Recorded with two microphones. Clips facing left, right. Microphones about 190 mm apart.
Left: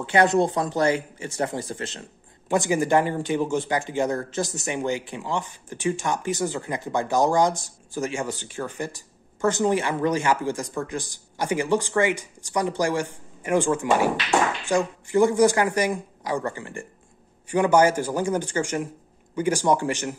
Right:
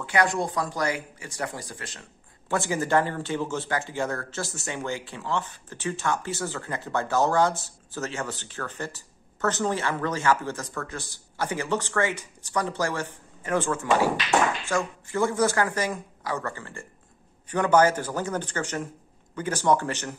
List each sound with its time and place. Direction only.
0.0 s speech: 25° left (ahead or behind)